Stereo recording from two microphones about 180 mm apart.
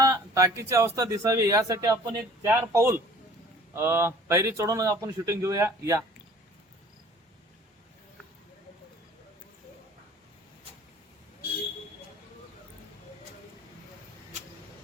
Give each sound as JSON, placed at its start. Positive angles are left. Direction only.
{"t": 0.0, "sound": "speech", "side_deg": -15}